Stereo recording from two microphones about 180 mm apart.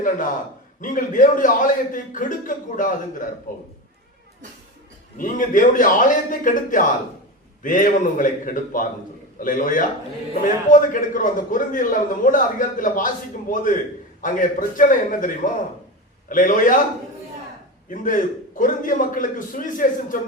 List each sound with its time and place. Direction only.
0.8 s a man's voice: 45° left (ahead or behind)
5.1 s a man's voice: 50° left (ahead or behind)
17.8 s a man's voice: 45° left (ahead or behind)